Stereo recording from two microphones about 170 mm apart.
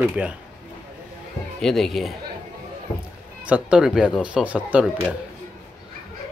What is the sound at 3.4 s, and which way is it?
Speech, 5° right (ahead or behind).